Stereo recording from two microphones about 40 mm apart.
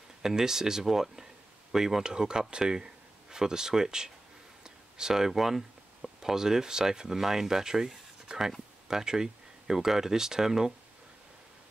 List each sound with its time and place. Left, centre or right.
0.2 s speech: centre